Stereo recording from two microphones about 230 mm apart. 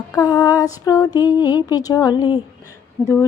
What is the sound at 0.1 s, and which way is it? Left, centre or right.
A woman's voice, centre.